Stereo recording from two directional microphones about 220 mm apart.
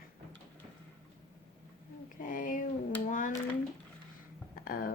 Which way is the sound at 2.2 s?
40° left (ahead or behind).